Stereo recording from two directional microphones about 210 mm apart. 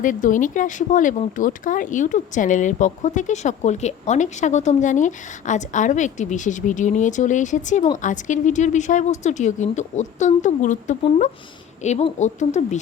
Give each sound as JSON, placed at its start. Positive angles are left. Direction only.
{"t": 0.0, "sound": "speech", "side_deg": 40}